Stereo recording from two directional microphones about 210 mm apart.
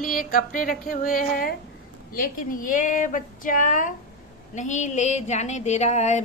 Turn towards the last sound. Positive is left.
turn(degrees=35)  # may be behind; listen again after turning